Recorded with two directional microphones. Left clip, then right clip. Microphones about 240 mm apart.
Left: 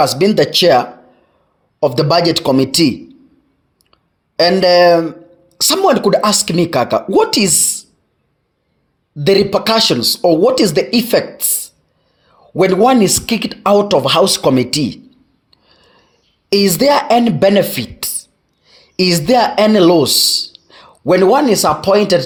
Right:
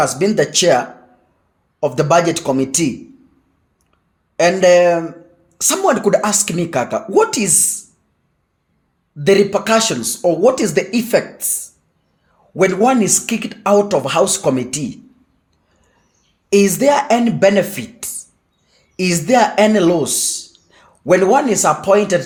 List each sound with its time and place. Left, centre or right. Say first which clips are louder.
0.0 s speech: left 3 dB; left
3.9 s speech: left 4 dB; left
9.1 s speech: left 1 dB; left
15.4 s a sound: left 10 dB; left
16.5 s speech: left 1 dB; left